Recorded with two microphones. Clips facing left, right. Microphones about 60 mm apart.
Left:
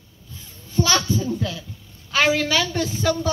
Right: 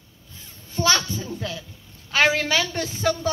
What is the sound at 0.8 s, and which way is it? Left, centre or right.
A woman's voice, right.